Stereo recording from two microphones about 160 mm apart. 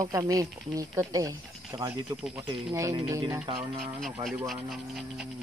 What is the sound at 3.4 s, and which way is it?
Speech, 30° right (ahead or behind).